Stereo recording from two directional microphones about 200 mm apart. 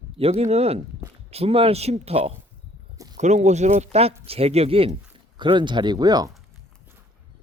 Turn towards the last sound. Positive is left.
turn(degrees=-20)  # may be behind; listen again after turning